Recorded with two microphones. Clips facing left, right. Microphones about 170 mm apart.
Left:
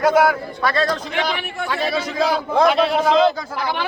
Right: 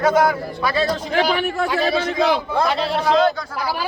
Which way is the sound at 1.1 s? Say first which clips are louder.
Right 5 dB; 35° right (ahead or behind).